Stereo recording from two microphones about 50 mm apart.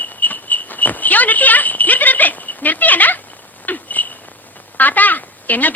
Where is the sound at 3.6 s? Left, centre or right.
Left.